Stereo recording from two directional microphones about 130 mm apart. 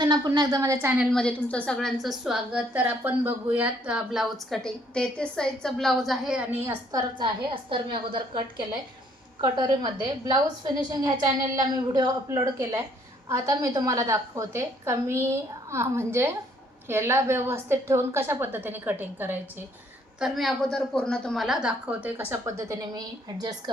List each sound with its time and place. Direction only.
0.0 s a woman's voice: 30° right (ahead or behind)
1.1 s a woman's voice: 10° left (ahead or behind); by 6.7 s 15° right (ahead or behind)
6.9 s a woman's voice: 40° right (ahead or behind); by 19.6 s 15° right (ahead or behind)
20.1 s a woman's voice: centre (ahead or behind); by 23.6 s 30° right (ahead or behind)